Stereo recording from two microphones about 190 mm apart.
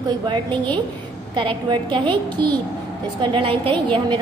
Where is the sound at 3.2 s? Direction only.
25° right (ahead or behind).